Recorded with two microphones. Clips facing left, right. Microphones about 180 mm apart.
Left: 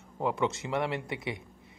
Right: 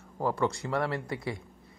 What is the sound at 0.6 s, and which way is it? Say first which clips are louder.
Speech: right 1 dB; 25° left (ahead or behind).